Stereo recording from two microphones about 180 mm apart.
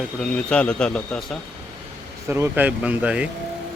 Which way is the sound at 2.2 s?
15° right (ahead or behind).